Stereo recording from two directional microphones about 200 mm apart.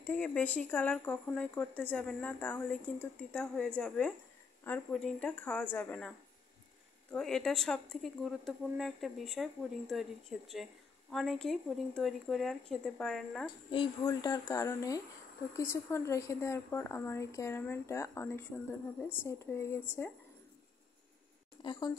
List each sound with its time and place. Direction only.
0.0 s speech: 5° left (ahead or behind)
13.7 s speech: 20° left (ahead or behind)
21.6 s a woman's voice: 20° left (ahead or behind)